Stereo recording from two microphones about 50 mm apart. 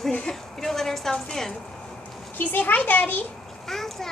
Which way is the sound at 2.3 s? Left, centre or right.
Left.